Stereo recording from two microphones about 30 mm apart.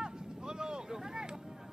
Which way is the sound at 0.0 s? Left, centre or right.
Right.